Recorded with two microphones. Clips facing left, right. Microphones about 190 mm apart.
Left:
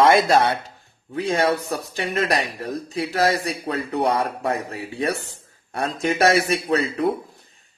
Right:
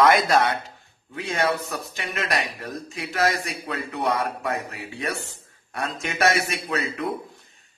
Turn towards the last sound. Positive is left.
turn(degrees=35)  # may be behind; listen again after turning